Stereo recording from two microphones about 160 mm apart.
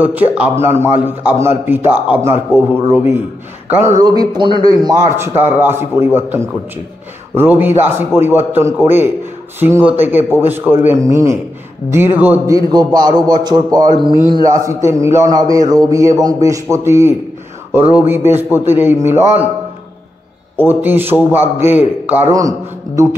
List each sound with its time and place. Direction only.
0.0 s a man's voice: 10° right (ahead or behind)
4.0 s a man's voice: 25° right (ahead or behind)
12.5 s a man's voice: 25° right (ahead or behind)
14.6 s a man's voice: 20° right (ahead or behind)
20.5 s a man's voice: 10° right (ahead or behind)